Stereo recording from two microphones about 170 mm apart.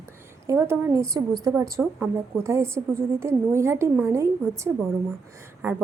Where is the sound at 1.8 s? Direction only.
10° right (ahead or behind).